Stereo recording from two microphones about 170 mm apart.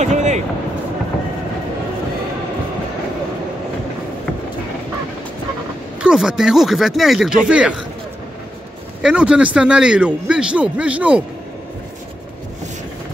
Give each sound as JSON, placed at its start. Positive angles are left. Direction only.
{"t": 0.0, "sound": "vehicle", "side_deg": -45}
{"t": 5.9, "sound": "speech", "side_deg": -5}
{"t": 9.0, "sound": "a man's voice", "side_deg": -5}